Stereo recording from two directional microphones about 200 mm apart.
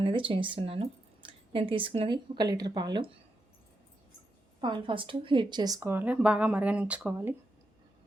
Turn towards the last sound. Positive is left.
turn(degrees=-5)  # may be behind; listen again after turning